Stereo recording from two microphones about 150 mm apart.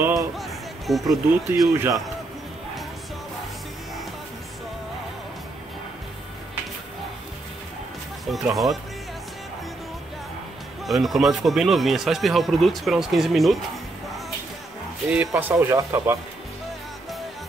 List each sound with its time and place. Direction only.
0.1 s music: centre (ahead or behind)
1.7 s speech: 20° right (ahead or behind)
8.3 s speech: centre (ahead or behind)
10.9 s speech: centre (ahead or behind)
15.0 s speech: 10° right (ahead or behind)